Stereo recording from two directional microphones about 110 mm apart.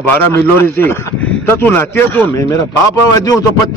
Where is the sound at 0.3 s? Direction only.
20° left (ahead or behind).